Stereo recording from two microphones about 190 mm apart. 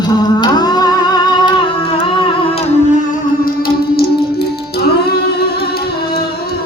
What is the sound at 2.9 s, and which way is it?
Music, 45° left (ahead or behind).